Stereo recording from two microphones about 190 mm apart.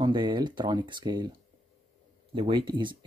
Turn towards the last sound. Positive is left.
turn(degrees=-25)  # may be behind; listen again after turning